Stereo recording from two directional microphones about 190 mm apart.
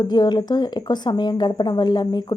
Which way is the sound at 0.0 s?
20° left (ahead or behind).